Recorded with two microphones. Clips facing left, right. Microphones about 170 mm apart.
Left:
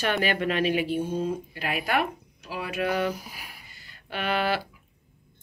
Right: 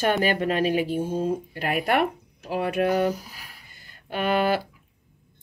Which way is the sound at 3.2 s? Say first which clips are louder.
Left 2 dB; 10° left (ahead or behind).